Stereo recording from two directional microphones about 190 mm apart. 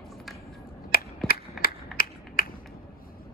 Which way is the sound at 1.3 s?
50° left (ahead or behind).